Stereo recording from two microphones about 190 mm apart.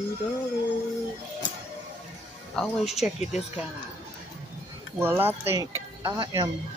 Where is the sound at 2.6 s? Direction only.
Centre (ahead or behind).